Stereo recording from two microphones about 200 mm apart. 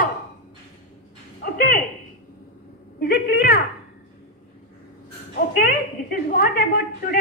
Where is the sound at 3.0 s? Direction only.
50° left (ahead or behind).